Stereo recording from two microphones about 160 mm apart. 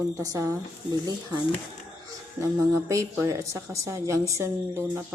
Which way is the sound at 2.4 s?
20° right (ahead or behind).